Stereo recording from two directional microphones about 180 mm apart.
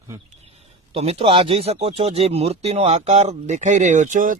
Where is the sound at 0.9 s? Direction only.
35° right (ahead or behind).